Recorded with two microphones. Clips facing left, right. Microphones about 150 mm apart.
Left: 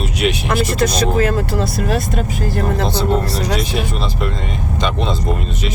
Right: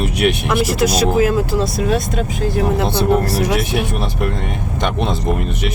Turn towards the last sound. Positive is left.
turn(degrees=-60)  # may be behind; listen again after turning